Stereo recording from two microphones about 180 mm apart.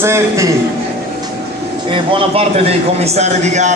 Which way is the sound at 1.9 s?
30° right (ahead or behind).